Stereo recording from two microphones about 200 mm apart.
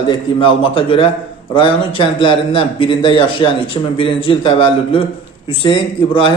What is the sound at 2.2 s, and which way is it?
A man's voice, 25° left (ahead or behind).